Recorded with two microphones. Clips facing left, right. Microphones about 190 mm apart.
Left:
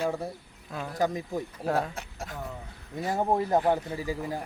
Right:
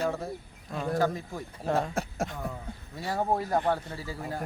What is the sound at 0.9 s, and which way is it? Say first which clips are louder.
Speech: even; 15° left (ahead or behind).